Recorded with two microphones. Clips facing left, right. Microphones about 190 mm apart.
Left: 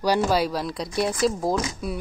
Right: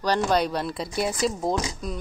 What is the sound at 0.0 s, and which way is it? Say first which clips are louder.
Speech: left 1 dB; 10° left (ahead or behind).